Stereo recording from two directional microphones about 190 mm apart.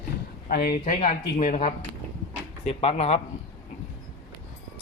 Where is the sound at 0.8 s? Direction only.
35° left (ahead or behind).